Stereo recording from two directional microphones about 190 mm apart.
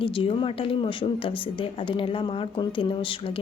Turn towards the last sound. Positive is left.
turn(degrees=30)  # may be behind; listen again after turning